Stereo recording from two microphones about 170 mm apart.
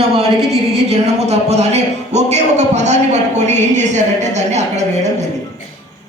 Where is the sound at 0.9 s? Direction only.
40° right (ahead or behind).